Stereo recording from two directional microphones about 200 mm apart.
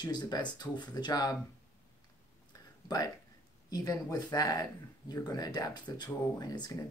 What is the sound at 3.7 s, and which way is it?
Speech, 20° left (ahead or behind).